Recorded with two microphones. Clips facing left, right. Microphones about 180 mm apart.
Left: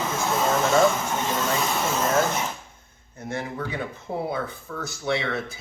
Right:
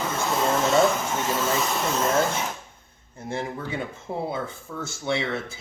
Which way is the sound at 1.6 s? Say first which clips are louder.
Even; centre (ahead or behind).